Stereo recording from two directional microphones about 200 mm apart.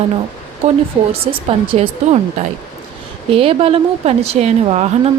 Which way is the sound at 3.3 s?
30° right (ahead or behind).